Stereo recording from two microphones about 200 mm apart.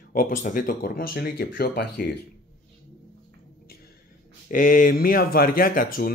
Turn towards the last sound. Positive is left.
turn(degrees=45)  # may be behind; listen again after turning